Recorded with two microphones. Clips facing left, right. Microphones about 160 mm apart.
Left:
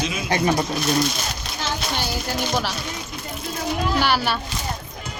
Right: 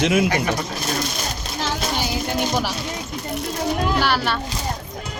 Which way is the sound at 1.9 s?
15° right (ahead or behind).